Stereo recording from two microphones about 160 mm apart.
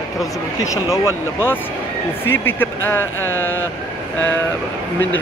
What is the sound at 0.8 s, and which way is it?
Speech, 15° left (ahead or behind).